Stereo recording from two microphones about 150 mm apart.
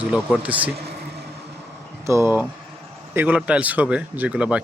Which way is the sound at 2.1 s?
20° right (ahead or behind).